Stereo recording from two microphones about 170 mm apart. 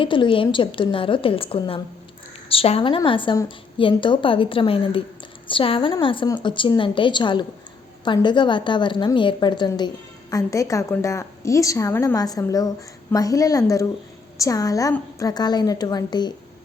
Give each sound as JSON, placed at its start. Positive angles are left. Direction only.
{"t": 0.0, "sound": "a woman's voice", "side_deg": 30}